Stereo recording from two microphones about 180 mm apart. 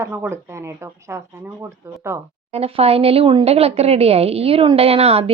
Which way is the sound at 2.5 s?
35° right (ahead or behind).